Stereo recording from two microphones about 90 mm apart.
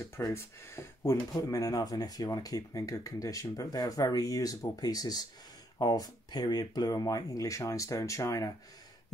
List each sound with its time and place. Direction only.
0.3 s speech: 30° left (ahead or behind)
1.3 s speech: 45° left (ahead or behind)